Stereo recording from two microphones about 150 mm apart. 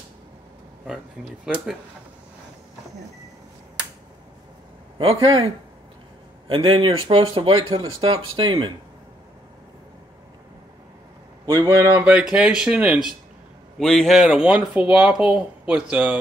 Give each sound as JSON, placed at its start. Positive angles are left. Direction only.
{"t": 1.4, "sound": "speech", "side_deg": -5}
{"t": 4.9, "sound": "speech", "side_deg": -35}
{"t": 11.9, "sound": "speech", "side_deg": -10}
{"t": 13.7, "sound": "speech", "side_deg": 5}